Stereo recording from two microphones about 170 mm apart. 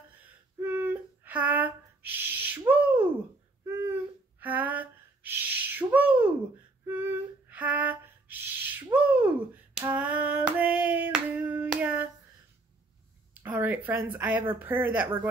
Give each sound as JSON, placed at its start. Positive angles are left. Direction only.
{"t": 0.2, "sound": "a sound", "side_deg": -15}
{"t": 9.8, "sound": "hands", "side_deg": -10}
{"t": 13.3, "sound": "speech", "side_deg": -10}